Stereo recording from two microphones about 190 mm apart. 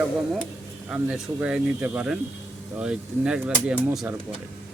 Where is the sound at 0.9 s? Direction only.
5° right (ahead or behind).